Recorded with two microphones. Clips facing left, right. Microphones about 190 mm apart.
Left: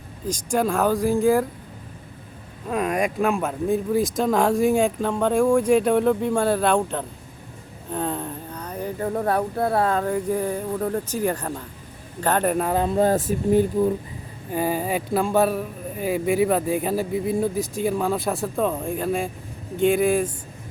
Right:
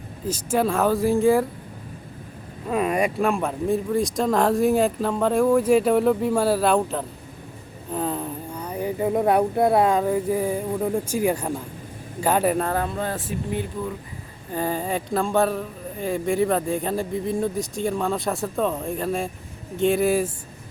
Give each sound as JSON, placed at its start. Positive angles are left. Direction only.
{"t": 0.3, "sound": "speech", "side_deg": -5}
{"t": 2.6, "sound": "speech", "side_deg": 0}
{"t": 12.6, "sound": "speech", "side_deg": 20}
{"t": 13.0, "sound": "speech", "side_deg": 40}
{"t": 14.5, "sound": "speech", "side_deg": 10}